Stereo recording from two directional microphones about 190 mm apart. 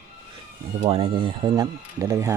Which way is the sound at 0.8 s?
30° right (ahead or behind).